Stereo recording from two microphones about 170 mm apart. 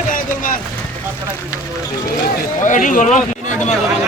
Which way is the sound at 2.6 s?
50° left (ahead or behind).